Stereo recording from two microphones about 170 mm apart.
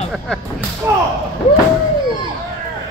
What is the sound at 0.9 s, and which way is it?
Speech, 15° right (ahead or behind).